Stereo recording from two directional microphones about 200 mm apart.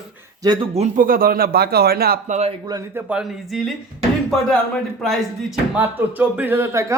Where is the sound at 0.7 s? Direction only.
40° right (ahead or behind).